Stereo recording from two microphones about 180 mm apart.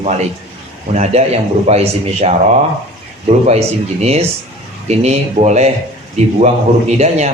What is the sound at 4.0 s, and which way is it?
Speech, 35° right (ahead or behind).